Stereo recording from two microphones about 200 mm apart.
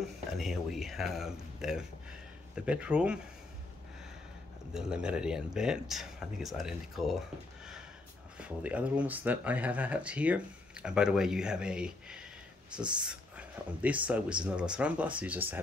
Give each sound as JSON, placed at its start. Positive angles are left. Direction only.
{"t": 0.4, "sound": "speech", "side_deg": 0}
{"t": 4.7, "sound": "speech", "side_deg": -5}